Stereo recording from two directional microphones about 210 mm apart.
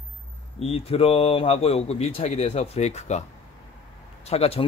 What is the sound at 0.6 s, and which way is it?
A man's voice, 30° left (ahead or behind).